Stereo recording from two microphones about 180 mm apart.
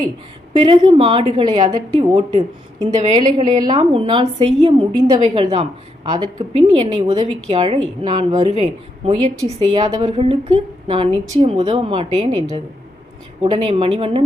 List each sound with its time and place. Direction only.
0.6 s a woman's voice: 30° right (ahead or behind)